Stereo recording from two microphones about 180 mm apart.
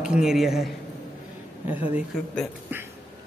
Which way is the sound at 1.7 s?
10° right (ahead or behind).